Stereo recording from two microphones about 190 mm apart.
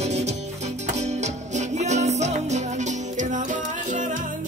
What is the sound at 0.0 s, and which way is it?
Music, 35° right (ahead or behind).